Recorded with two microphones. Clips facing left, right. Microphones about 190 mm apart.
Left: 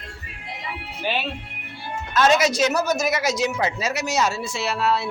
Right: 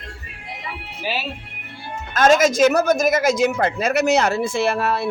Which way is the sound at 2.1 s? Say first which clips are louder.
Right 3 dB; 50° right (ahead or behind).